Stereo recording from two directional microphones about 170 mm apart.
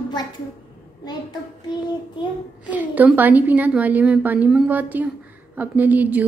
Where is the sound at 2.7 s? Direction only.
10° right (ahead or behind).